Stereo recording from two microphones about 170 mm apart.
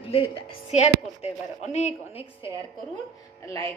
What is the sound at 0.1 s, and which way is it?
A woman's voice, 35° left (ahead or behind).